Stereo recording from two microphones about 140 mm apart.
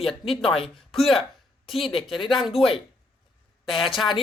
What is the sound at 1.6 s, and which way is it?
Speech, centre (ahead or behind).